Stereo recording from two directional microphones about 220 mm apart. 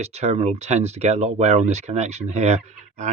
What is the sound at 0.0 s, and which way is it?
Speech, 30° right (ahead or behind).